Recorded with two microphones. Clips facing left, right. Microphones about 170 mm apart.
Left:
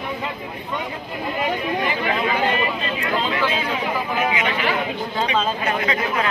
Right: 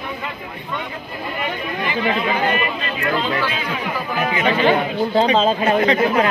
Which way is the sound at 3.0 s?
25° left (ahead or behind).